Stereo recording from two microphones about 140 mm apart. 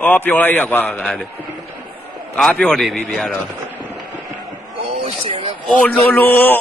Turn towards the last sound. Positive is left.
turn(degrees=10)  # may be behind; listen again after turning